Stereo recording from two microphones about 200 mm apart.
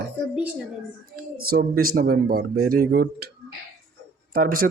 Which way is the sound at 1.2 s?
45° right (ahead or behind).